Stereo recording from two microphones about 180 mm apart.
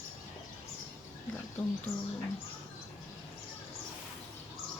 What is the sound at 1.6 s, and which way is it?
Speech, 5° left (ahead or behind).